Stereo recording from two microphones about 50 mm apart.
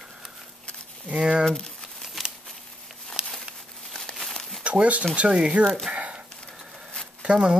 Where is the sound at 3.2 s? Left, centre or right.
Centre.